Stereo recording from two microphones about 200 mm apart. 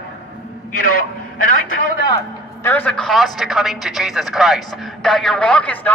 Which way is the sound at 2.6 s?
10° left (ahead or behind).